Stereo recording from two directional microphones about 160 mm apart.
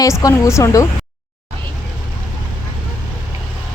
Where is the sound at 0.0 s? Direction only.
20° left (ahead or behind).